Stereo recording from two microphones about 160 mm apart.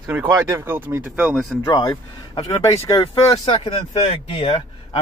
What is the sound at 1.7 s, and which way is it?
Speech, 25° left (ahead or behind).